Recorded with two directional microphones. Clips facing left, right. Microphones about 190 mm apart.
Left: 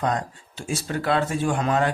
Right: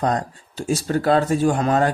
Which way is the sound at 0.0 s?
40° right (ahead or behind).